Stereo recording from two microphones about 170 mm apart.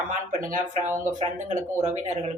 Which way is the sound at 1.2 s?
45° right (ahead or behind).